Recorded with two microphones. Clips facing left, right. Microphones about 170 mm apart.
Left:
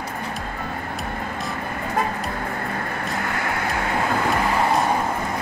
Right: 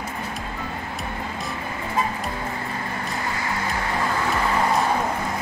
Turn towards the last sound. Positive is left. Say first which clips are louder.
# left 2 dB
turn(degrees=60)  # may be behind; listen again after turning